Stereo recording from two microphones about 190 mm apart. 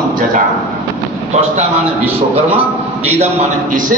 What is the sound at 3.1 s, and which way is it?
Speech, 35° right (ahead or behind).